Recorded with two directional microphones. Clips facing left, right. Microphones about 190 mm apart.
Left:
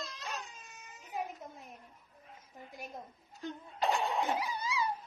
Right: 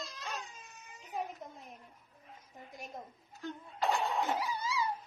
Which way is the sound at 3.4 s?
15° left (ahead or behind).